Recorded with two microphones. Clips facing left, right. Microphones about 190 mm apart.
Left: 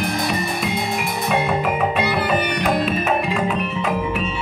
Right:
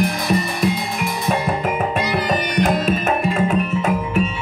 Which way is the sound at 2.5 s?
45° right (ahead or behind).